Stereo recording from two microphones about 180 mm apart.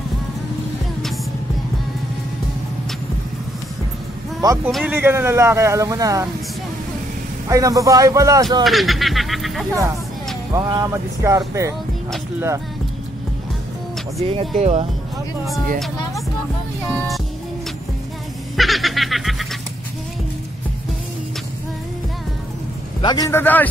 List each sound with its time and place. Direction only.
4.4 s speech: 20° right (ahead or behind)
7.4 s speech: 20° right (ahead or behind)
8.6 s a sound: centre (ahead or behind)
10.5 s speech: 20° right (ahead or behind)
14.2 s speech: 30° right (ahead or behind)
18.6 s snicker: centre (ahead or behind)
23.0 s a man's voice: 20° left (ahead or behind)